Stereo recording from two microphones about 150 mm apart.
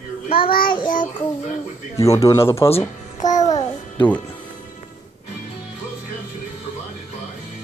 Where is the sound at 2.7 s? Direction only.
50° left (ahead or behind).